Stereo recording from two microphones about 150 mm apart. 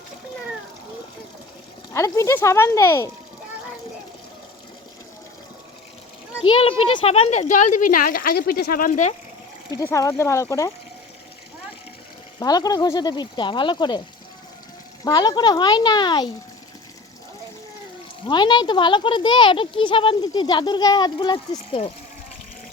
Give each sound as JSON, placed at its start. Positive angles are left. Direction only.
{"t": 1.9, "sound": "speech", "side_deg": 20}
{"t": 6.4, "sound": "speech", "side_deg": 35}
{"t": 9.7, "sound": "speech", "side_deg": 20}
{"t": 12.4, "sound": "speech", "side_deg": 25}
{"t": 15.0, "sound": "speech", "side_deg": 25}
{"t": 18.3, "sound": "speech", "side_deg": 30}